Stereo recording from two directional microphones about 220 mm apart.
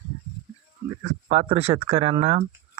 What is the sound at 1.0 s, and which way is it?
Speech, 25° right (ahead or behind).